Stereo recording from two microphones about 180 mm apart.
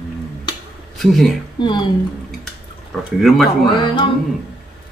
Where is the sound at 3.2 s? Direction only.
Centre (ahead or behind).